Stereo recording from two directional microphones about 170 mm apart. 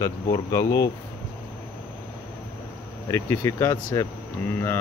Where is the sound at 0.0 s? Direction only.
20° left (ahead or behind).